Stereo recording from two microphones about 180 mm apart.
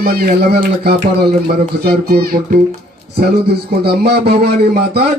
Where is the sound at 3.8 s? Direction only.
65° right (ahead or behind).